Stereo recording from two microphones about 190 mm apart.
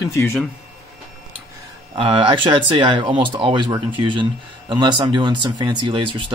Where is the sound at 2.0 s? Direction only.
25° right (ahead or behind).